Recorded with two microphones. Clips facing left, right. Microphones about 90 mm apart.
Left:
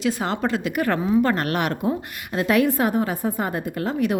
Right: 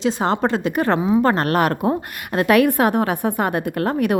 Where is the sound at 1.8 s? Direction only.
60° right (ahead or behind).